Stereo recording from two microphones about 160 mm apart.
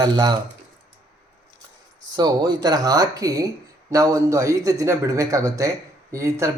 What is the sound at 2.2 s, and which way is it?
Speech, 25° right (ahead or behind).